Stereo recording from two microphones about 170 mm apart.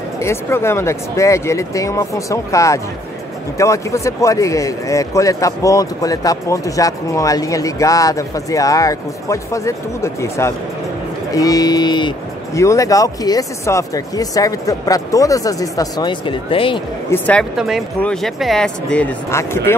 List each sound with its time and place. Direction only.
0.2 s a man's voice: 15° left (ahead or behind); by 16.8 s 30° left (ahead or behind)
17.1 s speech: 5° left (ahead or behind)
19.3 s speech: 15° left (ahead or behind)